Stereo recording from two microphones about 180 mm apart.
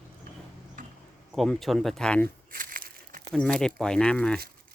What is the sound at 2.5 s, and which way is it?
Crumpling, 50° right (ahead or behind).